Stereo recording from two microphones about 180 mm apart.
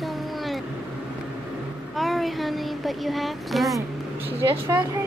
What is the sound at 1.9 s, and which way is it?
A child's voice, centre (ahead or behind).